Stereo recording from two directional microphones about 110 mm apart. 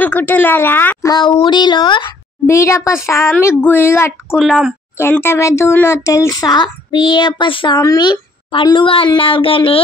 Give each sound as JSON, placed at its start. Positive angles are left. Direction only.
{"t": 0.0, "sound": "speech", "side_deg": 15}
{"t": 1.0, "sound": "speech", "side_deg": 40}
{"t": 2.4, "sound": "speech", "side_deg": 25}
{"t": 4.4, "sound": "a woman's voice", "side_deg": 0}
{"t": 5.1, "sound": "speech", "side_deg": 20}
{"t": 7.8, "sound": "speech", "side_deg": 35}